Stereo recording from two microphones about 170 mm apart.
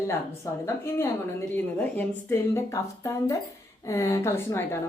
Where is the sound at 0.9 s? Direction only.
15° left (ahead or behind).